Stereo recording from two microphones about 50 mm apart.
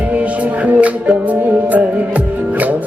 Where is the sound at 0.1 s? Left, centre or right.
Right.